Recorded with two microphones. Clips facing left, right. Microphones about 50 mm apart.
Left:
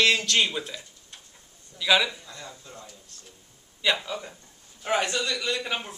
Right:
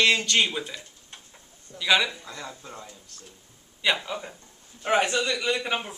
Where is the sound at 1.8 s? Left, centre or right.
Centre.